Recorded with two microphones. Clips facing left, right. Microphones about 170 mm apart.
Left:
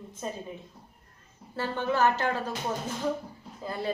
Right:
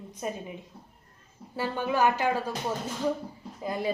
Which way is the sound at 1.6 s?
10° right (ahead or behind).